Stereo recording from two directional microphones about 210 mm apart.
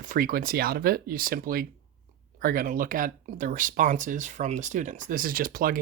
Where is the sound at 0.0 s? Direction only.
40° right (ahead or behind).